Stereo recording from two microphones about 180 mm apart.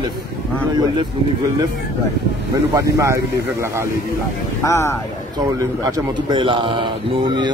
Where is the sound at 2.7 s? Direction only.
15° right (ahead or behind).